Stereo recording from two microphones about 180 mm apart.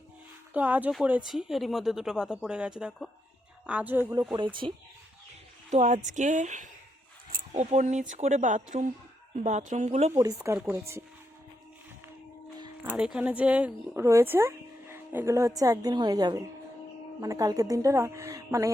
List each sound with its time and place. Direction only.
0.5 s a woman's voice: 10° right (ahead or behind)
4.6 s speech: 30° right (ahead or behind)
10.1 s speech: 15° right (ahead or behind)
12.8 s speech: 5° right (ahead or behind)